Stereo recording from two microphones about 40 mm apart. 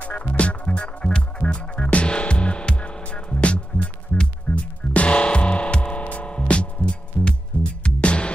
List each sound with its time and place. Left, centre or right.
0.0 s music: left